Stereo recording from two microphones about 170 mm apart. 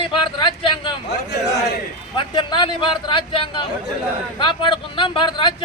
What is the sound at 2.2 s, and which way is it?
Speech, 30° left (ahead or behind).